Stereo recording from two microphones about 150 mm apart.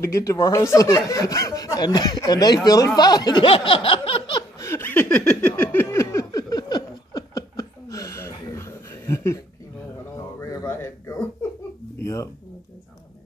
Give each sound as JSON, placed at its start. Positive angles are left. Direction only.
{"t": 0.0, "sound": "speech", "side_deg": 20}
{"t": 4.6, "sound": "a sound", "side_deg": 15}
{"t": 12.0, "sound": "music", "side_deg": 20}